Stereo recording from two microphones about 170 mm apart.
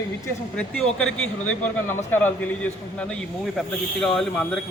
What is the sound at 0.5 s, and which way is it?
A man's voice, 5° left (ahead or behind).